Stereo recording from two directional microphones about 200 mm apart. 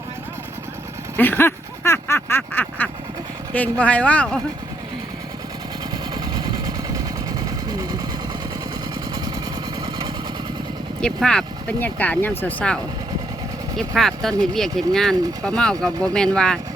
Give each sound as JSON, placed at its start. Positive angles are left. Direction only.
{"t": 1.1, "sound": "quack", "side_deg": 10}
{"t": 6.3, "sound": "vehicle", "side_deg": -20}
{"t": 11.0, "sound": "quack", "side_deg": 5}
{"t": 13.7, "sound": "speech", "side_deg": 0}